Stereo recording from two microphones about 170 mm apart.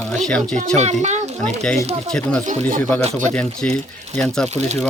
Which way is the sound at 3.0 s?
40° right (ahead or behind).